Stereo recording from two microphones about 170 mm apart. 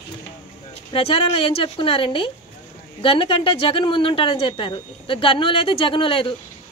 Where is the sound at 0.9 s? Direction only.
30° left (ahead or behind).